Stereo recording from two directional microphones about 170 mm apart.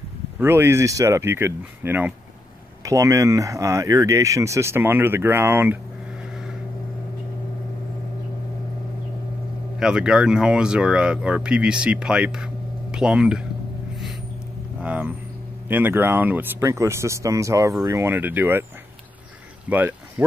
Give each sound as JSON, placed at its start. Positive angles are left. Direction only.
{"t": 0.4, "sound": "speech", "side_deg": -15}
{"t": 9.8, "sound": "speech", "side_deg": -5}
{"t": 14.8, "sound": "speech", "side_deg": -10}
{"t": 19.7, "sound": "speech", "side_deg": -10}